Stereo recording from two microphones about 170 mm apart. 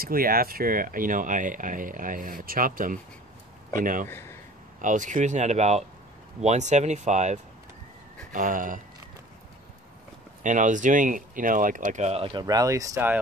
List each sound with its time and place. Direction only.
0.0 s speech: 60° right (ahead or behind)
4.1 s speech: 15° left (ahead or behind)
4.8 s speech: 50° right (ahead or behind)
10.4 s speech: 50° right (ahead or behind)
12.3 s speech: 25° right (ahead or behind)